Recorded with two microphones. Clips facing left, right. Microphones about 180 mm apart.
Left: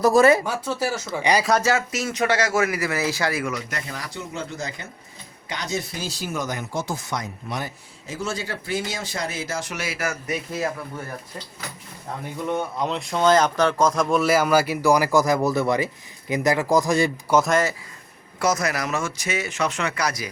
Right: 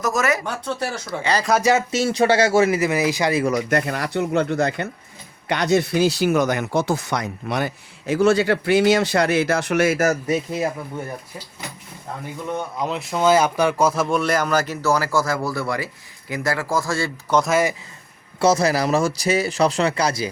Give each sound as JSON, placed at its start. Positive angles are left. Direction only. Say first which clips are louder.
{"t": 0.0, "sound": "speech", "louder": "left 6 dB", "side_deg": 30}
{"t": 0.4, "sound": "a man's voice", "louder": "left 1 dB", "side_deg": 5}
{"t": 1.6, "sound": "speech", "louder": "right 5 dB", "side_deg": -25}
{"t": 3.7, "sound": "speech", "louder": "right 11 dB", "side_deg": -60}
{"t": 12.5, "sound": "a man's voice", "louder": "even", "side_deg": 0}
{"t": 17.3, "sound": "a man's voice", "louder": "right 1 dB", "side_deg": 0}
{"t": 18.3, "sound": "speech", "louder": "right 6 dB", "side_deg": -30}